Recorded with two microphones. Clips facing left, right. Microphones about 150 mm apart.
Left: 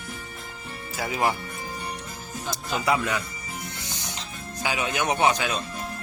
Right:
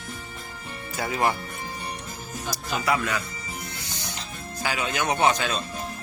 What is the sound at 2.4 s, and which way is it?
Speech, 25° left (ahead or behind).